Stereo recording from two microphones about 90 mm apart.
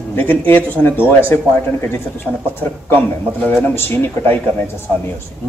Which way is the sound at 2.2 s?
20° left (ahead or behind).